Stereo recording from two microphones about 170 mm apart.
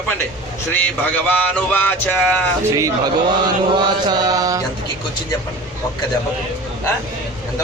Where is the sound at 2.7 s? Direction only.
20° right (ahead or behind).